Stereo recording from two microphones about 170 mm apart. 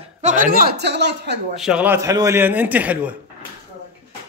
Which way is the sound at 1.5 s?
5° right (ahead or behind).